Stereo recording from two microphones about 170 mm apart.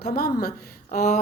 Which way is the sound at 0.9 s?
40° left (ahead or behind).